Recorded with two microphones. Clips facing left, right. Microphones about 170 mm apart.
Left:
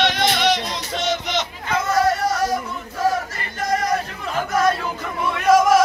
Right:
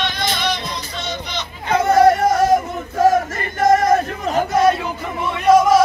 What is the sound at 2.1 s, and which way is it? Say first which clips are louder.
Male singing: right 6 dB; 50° right (ahead or behind).